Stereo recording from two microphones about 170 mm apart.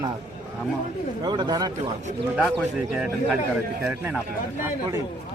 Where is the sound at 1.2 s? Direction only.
25° right (ahead or behind).